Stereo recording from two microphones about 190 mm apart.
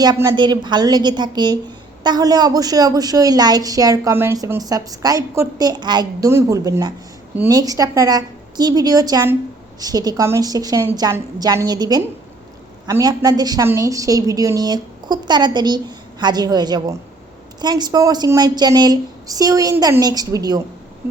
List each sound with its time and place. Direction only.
0.0 s a woman's voice: 20° right (ahead or behind)